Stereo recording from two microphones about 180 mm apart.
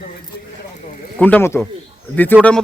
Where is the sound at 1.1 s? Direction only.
10° left (ahead or behind).